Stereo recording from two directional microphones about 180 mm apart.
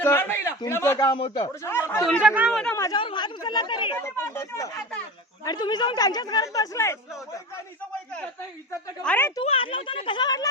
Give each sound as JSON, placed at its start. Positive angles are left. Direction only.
{"t": 0.0, "sound": "a man's voice", "side_deg": 15}
{"t": 1.7, "sound": "a man's voice", "side_deg": 15}
{"t": 2.0, "sound": "speech", "side_deg": 0}
{"t": 2.6, "sound": "a man's voice", "side_deg": 5}
{"t": 2.8, "sound": "speech", "side_deg": 25}
{"t": 3.9, "sound": "a man's voice", "side_deg": 15}
{"t": 9.0, "sound": "a man's voice", "side_deg": 10}
{"t": 9.4, "sound": "speech", "side_deg": 30}